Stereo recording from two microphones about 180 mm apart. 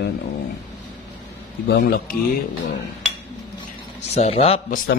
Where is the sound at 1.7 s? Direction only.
55° left (ahead or behind).